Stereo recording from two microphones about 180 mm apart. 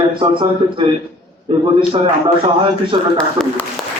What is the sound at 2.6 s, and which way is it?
Speech, 30° right (ahead or behind).